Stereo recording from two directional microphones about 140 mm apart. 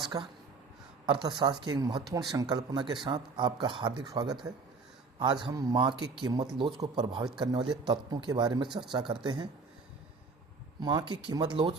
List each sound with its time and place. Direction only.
0.0 s speech: 30° right (ahead or behind)
10.8 s speech: 30° right (ahead or behind)